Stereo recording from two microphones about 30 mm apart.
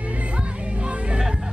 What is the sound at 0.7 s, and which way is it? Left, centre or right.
Music, right.